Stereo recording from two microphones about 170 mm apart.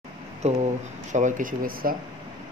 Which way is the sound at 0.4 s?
40° right (ahead or behind).